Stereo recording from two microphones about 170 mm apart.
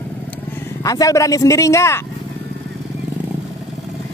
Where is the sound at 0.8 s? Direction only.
20° left (ahead or behind).